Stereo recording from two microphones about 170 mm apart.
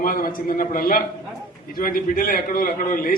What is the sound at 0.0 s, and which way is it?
A man's voice, 55° left (ahead or behind).